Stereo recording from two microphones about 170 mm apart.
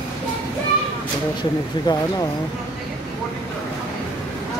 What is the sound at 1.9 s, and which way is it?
Speech, 25° left (ahead or behind).